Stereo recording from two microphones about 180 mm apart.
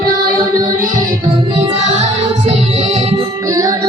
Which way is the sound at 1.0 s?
30° right (ahead or behind).